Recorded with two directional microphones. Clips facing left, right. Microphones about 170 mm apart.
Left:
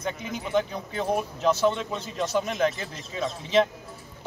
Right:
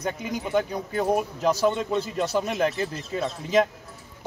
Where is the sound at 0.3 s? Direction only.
10° right (ahead or behind).